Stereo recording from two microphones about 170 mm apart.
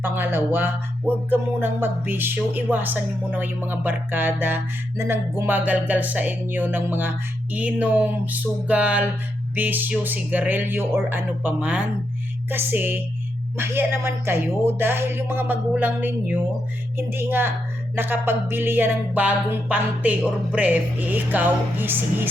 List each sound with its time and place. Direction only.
0.0 s speech: 15° right (ahead or behind)